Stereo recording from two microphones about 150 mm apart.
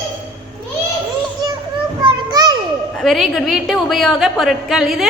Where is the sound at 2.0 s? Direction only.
30° right (ahead or behind).